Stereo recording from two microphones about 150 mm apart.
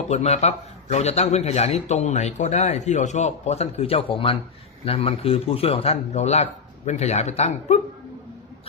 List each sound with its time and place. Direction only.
0.1 s a man's voice: 45° left (ahead or behind)